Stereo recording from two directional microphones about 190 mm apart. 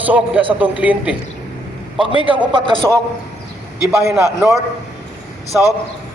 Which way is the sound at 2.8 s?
15° right (ahead or behind).